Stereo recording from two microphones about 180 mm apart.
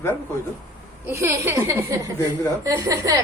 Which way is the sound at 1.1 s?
15° right (ahead or behind).